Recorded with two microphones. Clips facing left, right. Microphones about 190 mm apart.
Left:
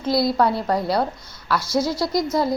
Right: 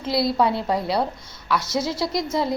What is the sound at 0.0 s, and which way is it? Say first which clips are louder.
A woman's voice: left 2 dB; centre (ahead or behind).